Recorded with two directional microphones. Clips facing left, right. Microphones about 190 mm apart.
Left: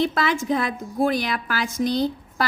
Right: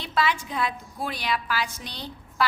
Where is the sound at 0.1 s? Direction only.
45° left (ahead or behind).